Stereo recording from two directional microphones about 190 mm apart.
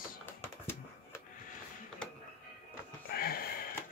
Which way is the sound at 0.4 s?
15° left (ahead or behind).